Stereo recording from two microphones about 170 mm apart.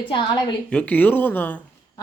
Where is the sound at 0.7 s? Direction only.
10° left (ahead or behind).